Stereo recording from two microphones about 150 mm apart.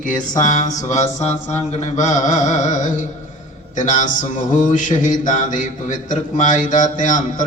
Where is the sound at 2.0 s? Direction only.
55° left (ahead or behind).